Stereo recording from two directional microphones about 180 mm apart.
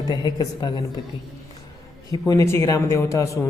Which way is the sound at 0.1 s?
20° left (ahead or behind).